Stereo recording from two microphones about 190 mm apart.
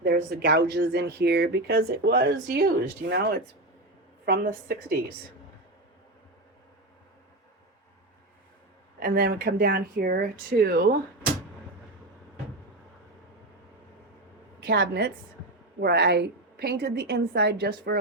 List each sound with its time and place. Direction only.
0.0 s speech: 55° right (ahead or behind)
9.0 s speech: 55° right (ahead or behind)
14.6 s a woman's voice: 60° right (ahead or behind)